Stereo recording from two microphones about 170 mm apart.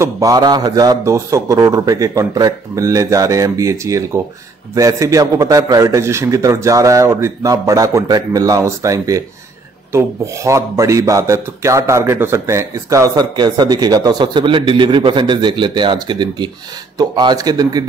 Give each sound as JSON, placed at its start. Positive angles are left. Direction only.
{"t": 0.0, "sound": "a man's voice", "side_deg": -20}